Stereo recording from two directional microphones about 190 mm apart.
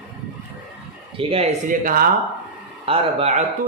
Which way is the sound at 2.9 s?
35° right (ahead or behind).